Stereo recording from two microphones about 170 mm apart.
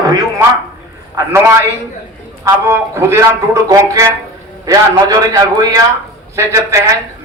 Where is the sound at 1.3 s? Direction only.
15° right (ahead or behind).